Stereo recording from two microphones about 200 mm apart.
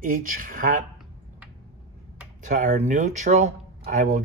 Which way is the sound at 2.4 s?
40° right (ahead or behind).